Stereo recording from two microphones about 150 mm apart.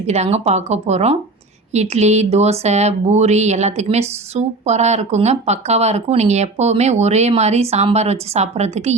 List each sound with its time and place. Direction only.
0.0 s speech: 45° right (ahead or behind)